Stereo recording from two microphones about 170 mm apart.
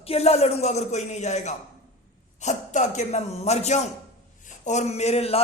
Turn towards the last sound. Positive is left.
turn(degrees=40)  # may be behind; listen again after turning